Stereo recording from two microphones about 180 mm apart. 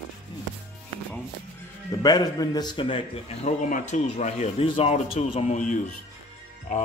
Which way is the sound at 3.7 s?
40° left (ahead or behind).